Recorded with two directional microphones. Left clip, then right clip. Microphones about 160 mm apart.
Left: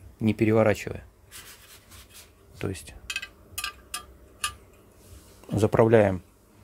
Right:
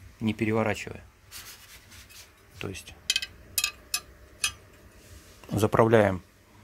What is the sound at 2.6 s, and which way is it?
Speech, 50° left (ahead or behind).